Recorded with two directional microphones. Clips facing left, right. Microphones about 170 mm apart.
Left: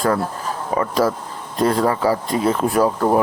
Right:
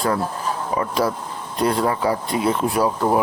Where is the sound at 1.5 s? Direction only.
40° left (ahead or behind).